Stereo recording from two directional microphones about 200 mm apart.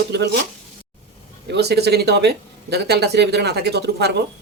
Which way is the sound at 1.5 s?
55° right (ahead or behind).